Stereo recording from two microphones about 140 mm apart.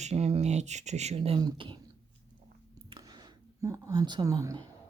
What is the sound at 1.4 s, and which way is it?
Speech, 35° right (ahead or behind).